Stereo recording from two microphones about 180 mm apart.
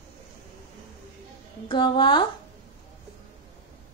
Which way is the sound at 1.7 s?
25° left (ahead or behind).